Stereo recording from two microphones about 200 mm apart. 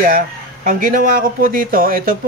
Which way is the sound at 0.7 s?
45° right (ahead or behind).